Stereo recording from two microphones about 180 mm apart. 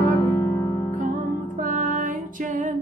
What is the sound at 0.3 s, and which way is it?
Music, 20° left (ahead or behind).